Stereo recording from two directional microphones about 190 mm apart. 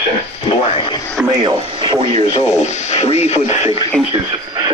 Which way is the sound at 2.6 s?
35° left (ahead or behind).